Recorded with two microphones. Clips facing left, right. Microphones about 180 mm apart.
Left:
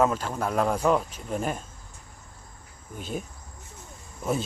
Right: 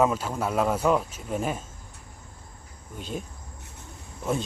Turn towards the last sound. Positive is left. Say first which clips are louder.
# even
turn(degrees=0)  # may be behind; listen again after turning